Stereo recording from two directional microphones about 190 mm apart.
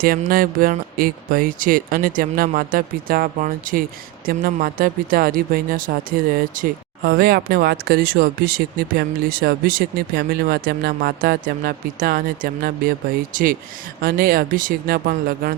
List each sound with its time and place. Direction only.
0.0 s speech: 50° right (ahead or behind)